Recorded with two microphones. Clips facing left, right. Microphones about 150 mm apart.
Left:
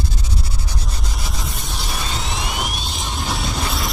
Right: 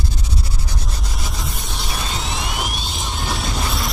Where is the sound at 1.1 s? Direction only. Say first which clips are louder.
Right 1 dB; centre (ahead or behind).